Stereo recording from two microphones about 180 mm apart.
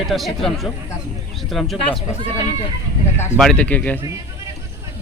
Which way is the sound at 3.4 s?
5° left (ahead or behind).